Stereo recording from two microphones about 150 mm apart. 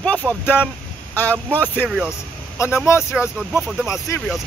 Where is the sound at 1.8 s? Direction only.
5° right (ahead or behind).